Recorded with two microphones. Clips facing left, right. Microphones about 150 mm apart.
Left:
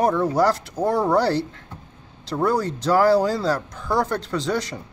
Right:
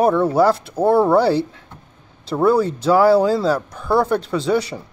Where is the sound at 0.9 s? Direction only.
5° right (ahead or behind).